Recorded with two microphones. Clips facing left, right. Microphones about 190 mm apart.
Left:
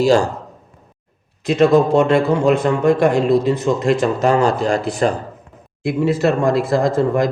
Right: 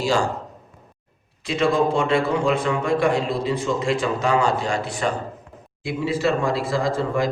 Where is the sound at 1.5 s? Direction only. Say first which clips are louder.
Left 7 dB; 40° left (ahead or behind).